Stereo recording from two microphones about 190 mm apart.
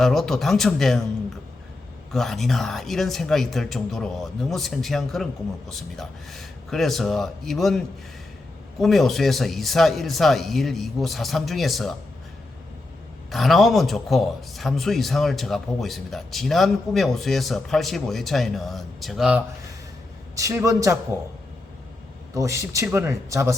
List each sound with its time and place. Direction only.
0.0 s speech: centre (ahead or behind)
2.1 s speech: centre (ahead or behind)
8.8 s speech: centre (ahead or behind)
13.3 s speech: centre (ahead or behind)
20.3 s speech: 15° right (ahead or behind)
22.4 s speech: 15° right (ahead or behind)